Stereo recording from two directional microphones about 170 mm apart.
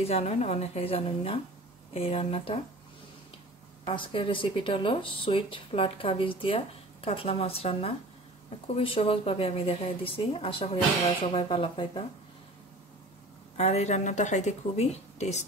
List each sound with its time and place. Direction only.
0.0 s speech: 40° left (ahead or behind)
3.8 s speech: 30° left (ahead or behind)
13.6 s speech: 40° left (ahead or behind)